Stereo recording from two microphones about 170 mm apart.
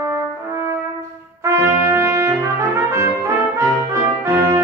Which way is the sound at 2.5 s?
15° right (ahead or behind).